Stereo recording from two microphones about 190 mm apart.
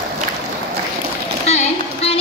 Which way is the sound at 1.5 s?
35° left (ahead or behind).